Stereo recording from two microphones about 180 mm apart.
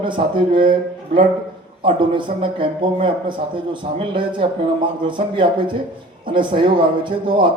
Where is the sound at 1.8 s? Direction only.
30° right (ahead or behind).